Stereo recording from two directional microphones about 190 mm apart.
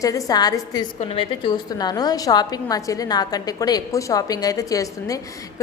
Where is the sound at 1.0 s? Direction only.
30° left (ahead or behind).